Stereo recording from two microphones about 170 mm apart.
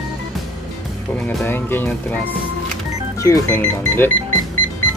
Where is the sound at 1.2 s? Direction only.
10° left (ahead or behind).